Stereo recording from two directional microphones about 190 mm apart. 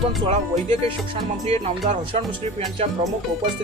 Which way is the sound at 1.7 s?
35° right (ahead or behind).